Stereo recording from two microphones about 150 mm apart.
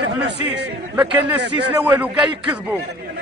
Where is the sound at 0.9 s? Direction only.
10° right (ahead or behind).